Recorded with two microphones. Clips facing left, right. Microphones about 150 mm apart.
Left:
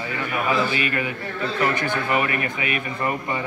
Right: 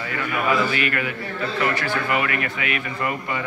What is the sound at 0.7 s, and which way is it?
Speech, 25° left (ahead or behind).